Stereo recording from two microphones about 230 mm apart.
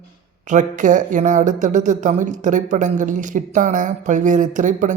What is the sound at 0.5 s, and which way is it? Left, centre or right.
Speech, right.